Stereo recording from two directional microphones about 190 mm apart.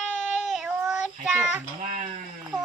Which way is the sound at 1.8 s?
40° right (ahead or behind).